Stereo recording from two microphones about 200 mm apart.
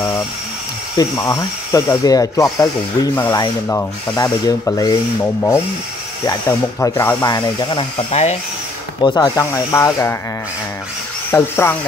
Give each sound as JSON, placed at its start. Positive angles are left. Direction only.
{"t": 0.9, "sound": "speech", "side_deg": 15}
{"t": 6.8, "sound": "speech", "side_deg": 15}
{"t": 8.1, "sound": "speech", "side_deg": 30}
{"t": 9.0, "sound": "speech", "side_deg": 20}
{"t": 11.3, "sound": "speech", "side_deg": 10}